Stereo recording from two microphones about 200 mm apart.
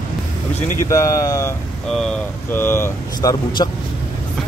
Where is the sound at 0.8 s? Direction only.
15° left (ahead or behind).